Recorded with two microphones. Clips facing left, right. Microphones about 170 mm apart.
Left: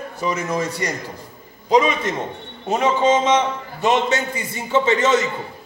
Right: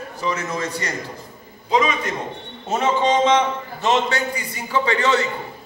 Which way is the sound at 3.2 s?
20° left (ahead or behind).